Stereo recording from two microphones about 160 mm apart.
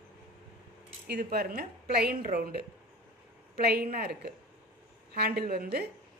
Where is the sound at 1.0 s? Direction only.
80° right.